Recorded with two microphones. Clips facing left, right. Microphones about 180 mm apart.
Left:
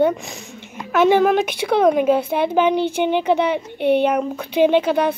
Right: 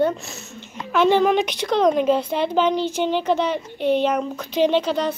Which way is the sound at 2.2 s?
55° left (ahead or behind).